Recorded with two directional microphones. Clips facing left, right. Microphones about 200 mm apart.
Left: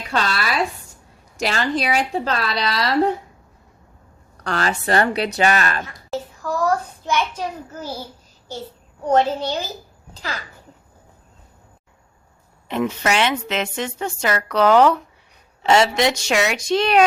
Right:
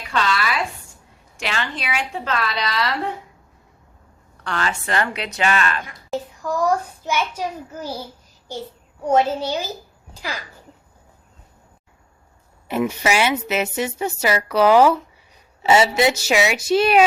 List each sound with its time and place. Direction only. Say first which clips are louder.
0.1 s a sound: even; 40° left (ahead or behind)
1.4 s a woman's voice: left 6 dB; 40° left (ahead or behind)
4.4 s a woman's voice: left 3 dB; 40° left (ahead or behind)
5.8 s a child's voice: right 1 dB; 15° right (ahead or behind)
9.0 s a woman's voice: even; 10° right (ahead or behind)
12.6 s a woman's voice: right 1 dB; 5° right (ahead or behind)